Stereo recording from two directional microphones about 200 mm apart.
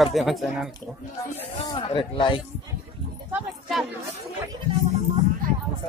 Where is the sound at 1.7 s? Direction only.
25° left (ahead or behind).